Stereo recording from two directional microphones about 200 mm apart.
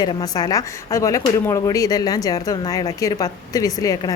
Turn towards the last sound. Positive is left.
turn(degrees=15)  # may be behind; listen again after turning